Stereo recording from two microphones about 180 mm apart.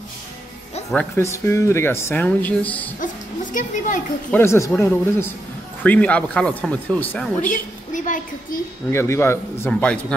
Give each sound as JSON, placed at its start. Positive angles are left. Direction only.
{"t": 1.1, "sound": "speech", "side_deg": 15}
{"t": 3.5, "sound": "a woman's voice", "side_deg": 45}
{"t": 4.3, "sound": "speech", "side_deg": 15}
{"t": 7.9, "sound": "a woman's voice", "side_deg": 45}
{"t": 8.9, "sound": "speech", "side_deg": 15}